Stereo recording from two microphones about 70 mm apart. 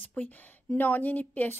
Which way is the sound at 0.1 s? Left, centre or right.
Left.